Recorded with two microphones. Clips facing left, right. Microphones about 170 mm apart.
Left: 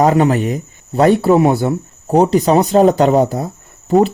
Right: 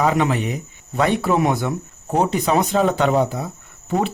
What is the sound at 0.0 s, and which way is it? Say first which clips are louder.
Speech: left 6 dB; 40° left (ahead or behind).